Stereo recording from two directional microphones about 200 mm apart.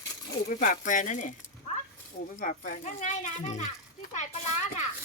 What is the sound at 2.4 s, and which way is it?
Speech, 45° left (ahead or behind).